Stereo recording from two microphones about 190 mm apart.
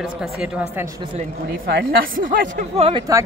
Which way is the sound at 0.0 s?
5° right (ahead or behind).